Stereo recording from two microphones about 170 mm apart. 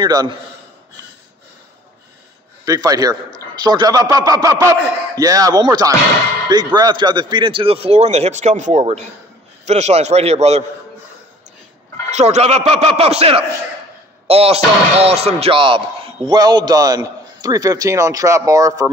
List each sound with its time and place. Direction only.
0.0 s a man's voice: 25° right (ahead or behind)
2.6 s a man's voice: 20° right (ahead or behind); by 10.6 s 40° right (ahead or behind)
12.1 s a man's voice: 40° right (ahead or behind); by 18.9 s 20° right (ahead or behind)